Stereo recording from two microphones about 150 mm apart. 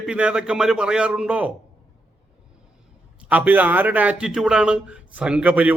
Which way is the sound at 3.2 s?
10° right (ahead or behind).